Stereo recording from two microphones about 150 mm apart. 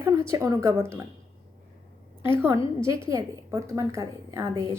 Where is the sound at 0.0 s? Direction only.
20° right (ahead or behind).